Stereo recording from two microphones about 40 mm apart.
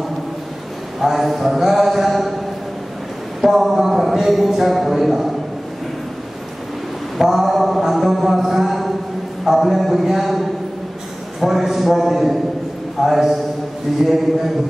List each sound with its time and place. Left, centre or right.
0.9 s a man's voice: centre
3.3 s a man's voice: centre
7.2 s a man's voice: centre